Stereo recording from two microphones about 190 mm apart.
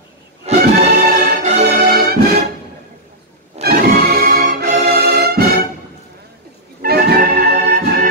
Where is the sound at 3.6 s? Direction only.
55° right (ahead or behind).